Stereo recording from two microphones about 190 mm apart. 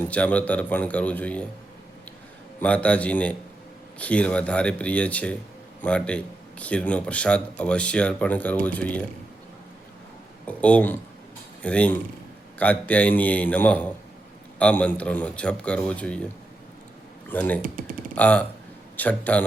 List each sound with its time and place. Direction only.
0.1 s speech: 5° left (ahead or behind)
2.6 s speech: 5° left (ahead or behind)
10.4 s speech: 5° left (ahead or behind)
17.2 s speech: 10° left (ahead or behind)
17.6 s speech: 45° right (ahead or behind)
18.1 s speech: 5° left (ahead or behind)